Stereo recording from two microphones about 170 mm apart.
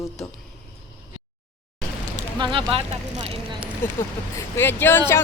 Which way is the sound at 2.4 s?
30° right (ahead or behind).